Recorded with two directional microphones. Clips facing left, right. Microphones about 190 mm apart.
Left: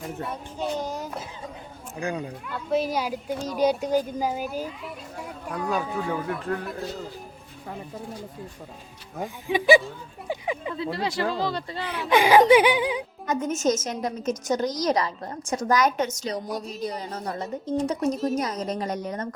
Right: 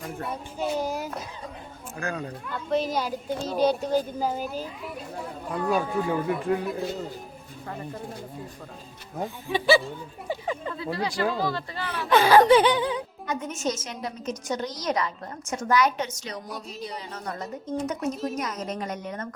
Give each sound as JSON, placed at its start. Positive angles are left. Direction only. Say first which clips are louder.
{"t": 0.2, "sound": "a child's voice", "louder": "right 2 dB", "side_deg": -5}
{"t": 2.0, "sound": "speech", "louder": "left 2 dB", "side_deg": 15}
{"t": 5.6, "sound": "a man's voice", "louder": "right 2 dB", "side_deg": -5}
{"t": 9.5, "sound": "speech", "louder": "left 3 dB", "side_deg": 15}
{"t": 10.2, "sound": "a sound", "louder": "left 1 dB", "side_deg": 10}
{"t": 10.9, "sound": "speech", "louder": "right 2 dB", "side_deg": 25}
{"t": 13.2, "sound": "a woman's voice", "louder": "left 6 dB", "side_deg": 45}